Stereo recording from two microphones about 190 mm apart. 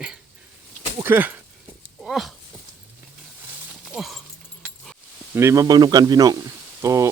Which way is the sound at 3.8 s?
Centre (ahead or behind).